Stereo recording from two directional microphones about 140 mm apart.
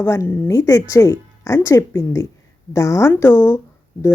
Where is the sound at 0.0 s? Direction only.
20° left (ahead or behind).